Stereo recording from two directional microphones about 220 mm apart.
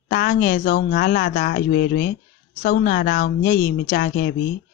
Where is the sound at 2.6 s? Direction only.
40° left (ahead or behind).